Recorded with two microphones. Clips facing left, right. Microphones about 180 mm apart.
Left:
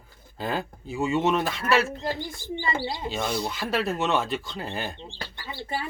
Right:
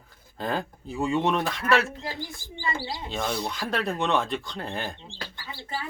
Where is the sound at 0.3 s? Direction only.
Centre (ahead or behind).